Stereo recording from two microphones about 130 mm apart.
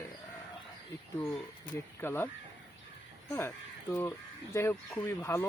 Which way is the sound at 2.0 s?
15° left (ahead or behind).